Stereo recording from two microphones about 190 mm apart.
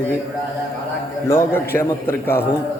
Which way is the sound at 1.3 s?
15° left (ahead or behind).